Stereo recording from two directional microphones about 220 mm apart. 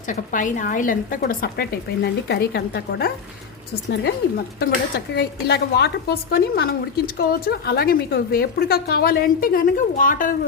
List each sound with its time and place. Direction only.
0.1 s a woman's voice: 35° left (ahead or behind)
4.6 s speech: 50° left (ahead or behind)